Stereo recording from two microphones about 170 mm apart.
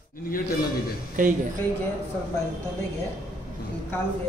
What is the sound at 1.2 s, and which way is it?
Speech, 50° right (ahead or behind).